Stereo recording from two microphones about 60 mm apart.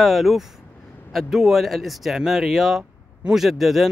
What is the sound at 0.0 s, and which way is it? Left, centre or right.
Speech, centre.